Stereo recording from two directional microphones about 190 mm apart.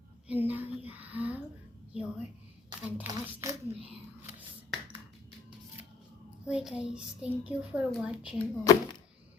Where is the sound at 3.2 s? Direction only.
15° right (ahead or behind).